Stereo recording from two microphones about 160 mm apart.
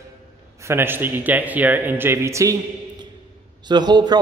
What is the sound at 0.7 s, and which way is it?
A man's voice, 15° right (ahead or behind).